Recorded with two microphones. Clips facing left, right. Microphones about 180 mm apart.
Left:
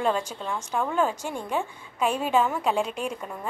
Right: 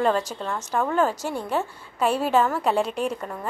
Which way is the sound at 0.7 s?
5° right (ahead or behind).